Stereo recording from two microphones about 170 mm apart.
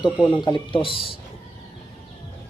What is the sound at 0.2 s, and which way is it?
Speech, 10° left (ahead or behind).